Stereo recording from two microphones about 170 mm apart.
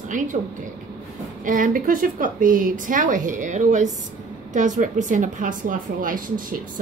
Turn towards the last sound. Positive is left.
turn(degrees=-55)  # may be behind; listen again after turning